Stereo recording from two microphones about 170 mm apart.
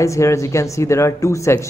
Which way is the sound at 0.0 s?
15° left (ahead or behind).